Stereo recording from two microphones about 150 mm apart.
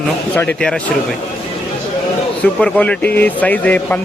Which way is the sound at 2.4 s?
5° left (ahead or behind).